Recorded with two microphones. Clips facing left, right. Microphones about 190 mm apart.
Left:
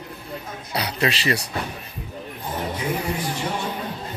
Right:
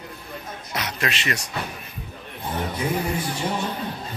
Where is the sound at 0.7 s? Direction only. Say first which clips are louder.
Left 4 dB; 30° left (ahead or behind).